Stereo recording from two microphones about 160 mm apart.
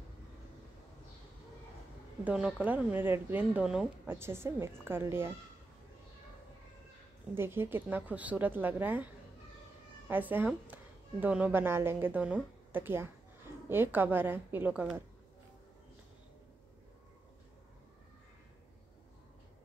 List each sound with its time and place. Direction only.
2.2 s speech: 5° right (ahead or behind)
7.3 s a woman's voice: 15° right (ahead or behind)